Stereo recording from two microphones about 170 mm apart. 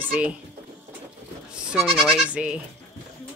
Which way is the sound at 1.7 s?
5° right (ahead or behind).